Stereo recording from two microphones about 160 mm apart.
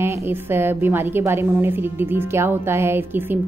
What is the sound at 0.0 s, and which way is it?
Speech, 15° right (ahead or behind).